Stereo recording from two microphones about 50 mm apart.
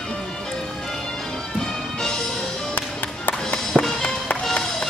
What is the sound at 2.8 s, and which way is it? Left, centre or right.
Music, left.